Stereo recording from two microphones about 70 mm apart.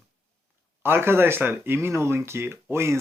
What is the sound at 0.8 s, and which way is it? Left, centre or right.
Speech, right.